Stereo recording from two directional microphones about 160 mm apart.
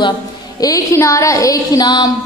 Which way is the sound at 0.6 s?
20° left (ahead or behind).